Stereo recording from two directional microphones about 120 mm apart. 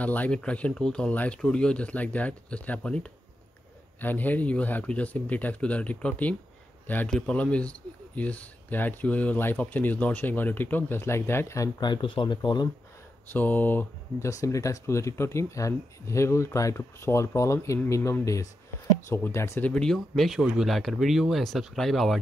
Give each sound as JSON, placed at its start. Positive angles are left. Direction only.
{"t": 0.0, "sound": "speech", "side_deg": 15}
{"t": 13.3, "sound": "speech", "side_deg": 15}
{"t": 14.4, "sound": "speech", "side_deg": 25}
{"t": 19.7, "sound": "speech", "side_deg": 5}